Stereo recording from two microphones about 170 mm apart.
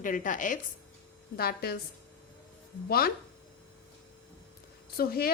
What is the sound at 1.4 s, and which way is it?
Speech, 65° left (ahead or behind).